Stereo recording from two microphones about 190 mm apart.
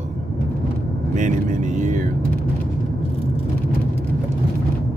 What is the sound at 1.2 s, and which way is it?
Speech, 40° right (ahead or behind).